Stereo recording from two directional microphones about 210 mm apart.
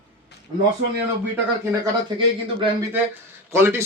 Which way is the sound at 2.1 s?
25° right (ahead or behind).